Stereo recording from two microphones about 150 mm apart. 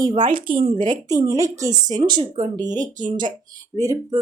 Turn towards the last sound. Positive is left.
turn(degrees=-25)  # may be behind; listen again after turning